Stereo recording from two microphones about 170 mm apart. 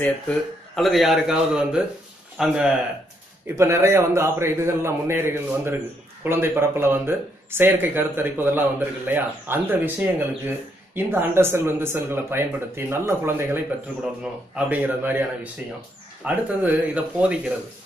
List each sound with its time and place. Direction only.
0.7 s a man's voice: centre (ahead or behind)
3.4 s speech: 15° right (ahead or behind)